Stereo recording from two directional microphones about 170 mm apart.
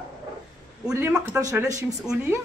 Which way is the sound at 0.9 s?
15° right (ahead or behind).